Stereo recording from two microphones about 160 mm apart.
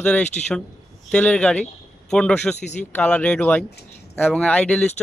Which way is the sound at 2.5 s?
45° left (ahead or behind).